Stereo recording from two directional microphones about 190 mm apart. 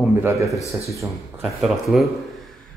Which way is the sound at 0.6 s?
15° left (ahead or behind).